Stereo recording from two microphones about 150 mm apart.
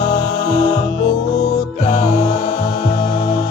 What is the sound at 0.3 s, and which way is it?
Music, 40° left (ahead or behind).